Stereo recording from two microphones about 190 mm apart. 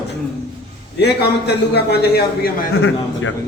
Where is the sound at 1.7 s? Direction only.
55° left (ahead or behind).